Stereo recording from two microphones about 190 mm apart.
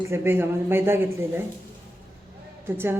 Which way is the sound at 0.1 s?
10° right (ahead or behind).